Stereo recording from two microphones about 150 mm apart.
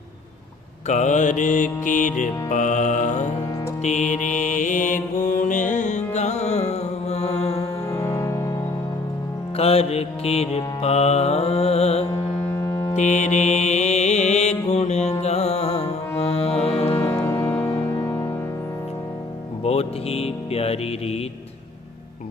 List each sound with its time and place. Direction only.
0.9 s music: 50° left (ahead or behind)
3.8 s mantra: 55° left (ahead or behind)
7.9 s music: 20° left (ahead or behind)
9.6 s mantra: 40° left (ahead or behind)
12.6 s foghorn: 20° left (ahead or behind)
13.0 s mantra: 55° left (ahead or behind)
15.2 s music: 45° left (ahead or behind)
17.0 s music: 15° left (ahead or behind)
19.6 s music: 40° left (ahead or behind)